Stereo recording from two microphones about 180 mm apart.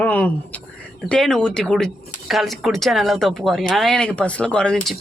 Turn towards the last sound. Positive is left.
turn(degrees=0)  # may be behind; listen again after turning